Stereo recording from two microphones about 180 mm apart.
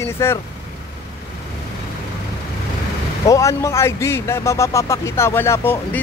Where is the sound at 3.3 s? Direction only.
15° left (ahead or behind).